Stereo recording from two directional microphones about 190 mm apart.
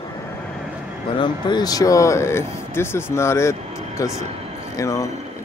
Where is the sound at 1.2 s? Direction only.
20° left (ahead or behind).